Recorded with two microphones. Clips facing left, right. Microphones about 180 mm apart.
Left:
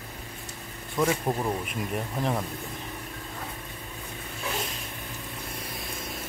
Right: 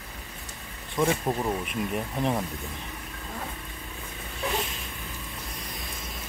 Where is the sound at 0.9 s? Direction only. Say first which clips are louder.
Even; centre (ahead or behind).